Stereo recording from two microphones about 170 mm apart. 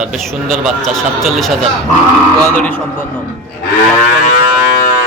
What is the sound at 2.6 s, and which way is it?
Speech, 10° left (ahead or behind).